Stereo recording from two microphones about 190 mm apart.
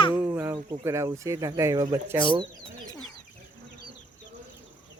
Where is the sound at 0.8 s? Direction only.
15° right (ahead or behind).